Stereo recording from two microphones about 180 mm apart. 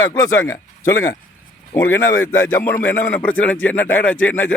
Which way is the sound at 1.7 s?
10° left (ahead or behind).